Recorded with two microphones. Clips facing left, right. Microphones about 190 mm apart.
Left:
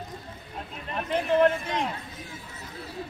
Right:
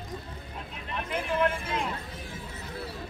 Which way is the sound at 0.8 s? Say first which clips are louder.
Left 5 dB; 40° left (ahead or behind).